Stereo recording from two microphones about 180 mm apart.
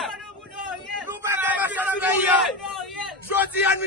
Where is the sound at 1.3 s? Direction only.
10° right (ahead or behind).